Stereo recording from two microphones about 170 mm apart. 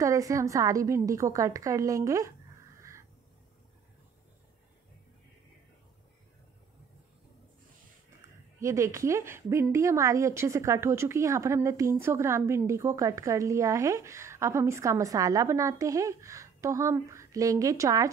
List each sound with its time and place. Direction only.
0.0 s a woman's voice: 20° right (ahead or behind)
8.5 s a woman's voice: 15° right (ahead or behind)